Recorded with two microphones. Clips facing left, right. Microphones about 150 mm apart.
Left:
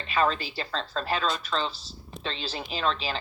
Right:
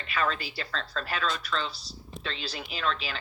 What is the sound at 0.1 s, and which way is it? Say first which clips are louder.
A woman's voice: left 4 dB; 35° left (ahead or behind).